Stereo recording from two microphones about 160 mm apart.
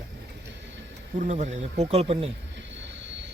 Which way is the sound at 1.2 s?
45° right (ahead or behind).